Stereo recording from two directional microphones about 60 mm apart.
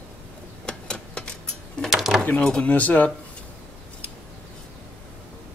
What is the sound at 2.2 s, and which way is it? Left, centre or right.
Speech, centre.